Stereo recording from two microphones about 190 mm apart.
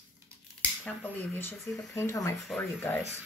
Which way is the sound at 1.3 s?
5° left (ahead or behind).